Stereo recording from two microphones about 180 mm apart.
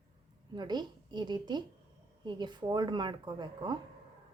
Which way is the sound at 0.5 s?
25° right (ahead or behind).